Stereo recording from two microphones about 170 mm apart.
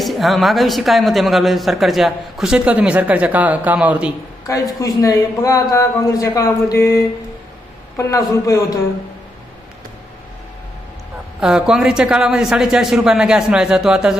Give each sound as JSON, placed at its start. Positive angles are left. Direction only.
{"t": 0.0, "sound": "speech", "side_deg": 0}
{"t": 4.8, "sound": "a woman's voice", "side_deg": 20}
{"t": 11.3, "sound": "speech", "side_deg": -5}